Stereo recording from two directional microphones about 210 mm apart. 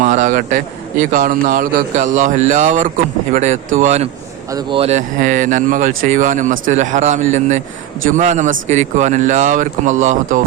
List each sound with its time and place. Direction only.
0.0 s a man's voice: 35° right (ahead or behind)